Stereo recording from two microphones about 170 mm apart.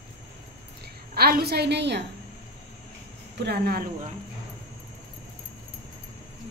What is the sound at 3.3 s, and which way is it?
Speech, 75° right (ahead or behind).